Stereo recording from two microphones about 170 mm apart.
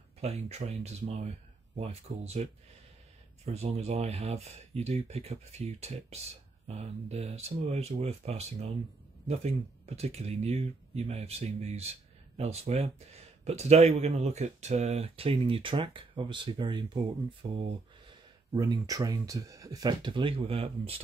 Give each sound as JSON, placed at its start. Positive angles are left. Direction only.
{"t": 0.2, "sound": "speech", "side_deg": -40}
{"t": 3.6, "sound": "speech", "side_deg": -40}